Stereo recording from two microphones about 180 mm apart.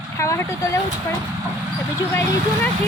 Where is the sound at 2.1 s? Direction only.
10° left (ahead or behind).